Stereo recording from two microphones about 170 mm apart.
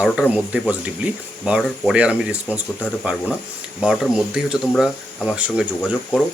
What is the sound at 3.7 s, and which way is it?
Speech, centre (ahead or behind).